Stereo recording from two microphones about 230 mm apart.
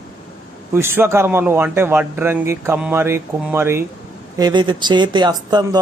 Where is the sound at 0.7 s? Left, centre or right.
Centre.